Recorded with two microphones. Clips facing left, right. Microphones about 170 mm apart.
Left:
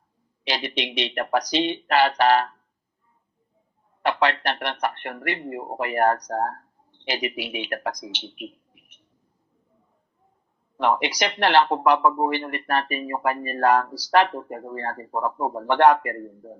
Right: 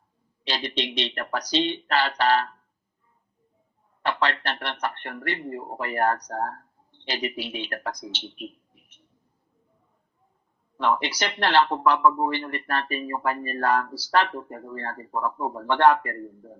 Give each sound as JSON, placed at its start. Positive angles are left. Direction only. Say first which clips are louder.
{"t": 0.4, "sound": "speech", "louder": "left 1 dB", "side_deg": 10}
{"t": 4.0, "sound": "speech", "louder": "left 4 dB", "side_deg": 10}
{"t": 6.3, "sound": "speech", "louder": "left 4 dB", "side_deg": 40}
{"t": 6.9, "sound": "speech", "louder": "left 2 dB", "side_deg": 10}
{"t": 10.8, "sound": "speech", "louder": "left 2 dB", "side_deg": 10}
{"t": 14.3, "sound": "speech", "louder": "left 3 dB", "side_deg": 40}
{"t": 14.7, "sound": "speech", "louder": "left 2 dB", "side_deg": 15}